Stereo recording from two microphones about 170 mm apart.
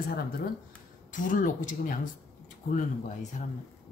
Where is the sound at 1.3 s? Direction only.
55° left (ahead or behind).